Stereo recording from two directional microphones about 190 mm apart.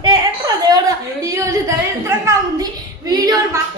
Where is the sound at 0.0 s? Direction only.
20° right (ahead or behind).